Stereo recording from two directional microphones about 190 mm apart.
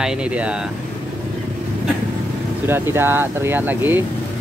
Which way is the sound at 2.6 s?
10° right (ahead or behind).